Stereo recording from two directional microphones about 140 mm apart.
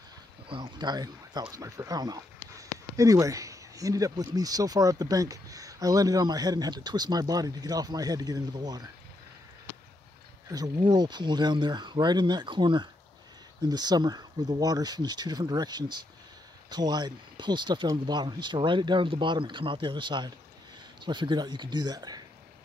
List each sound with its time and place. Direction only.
0.5 s speech: 35° right (ahead or behind)
10.5 s speech: 30° right (ahead or behind)